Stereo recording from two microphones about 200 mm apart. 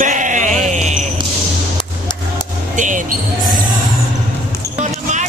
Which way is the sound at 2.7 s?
40° right (ahead or behind).